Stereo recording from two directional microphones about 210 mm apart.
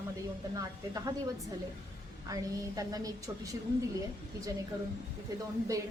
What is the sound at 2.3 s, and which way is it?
A woman's voice, 15° right (ahead or behind).